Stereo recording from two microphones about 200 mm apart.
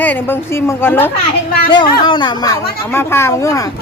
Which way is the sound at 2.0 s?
25° left (ahead or behind).